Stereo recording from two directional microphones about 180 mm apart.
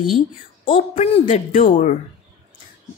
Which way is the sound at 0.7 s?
40° left (ahead or behind).